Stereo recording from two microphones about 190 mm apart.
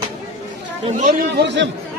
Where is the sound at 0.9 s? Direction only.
45° right (ahead or behind); by 1.6 s 65° right (ahead or behind).